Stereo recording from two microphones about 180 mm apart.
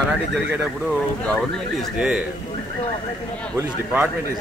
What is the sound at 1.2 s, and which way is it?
Speech, 5° left (ahead or behind).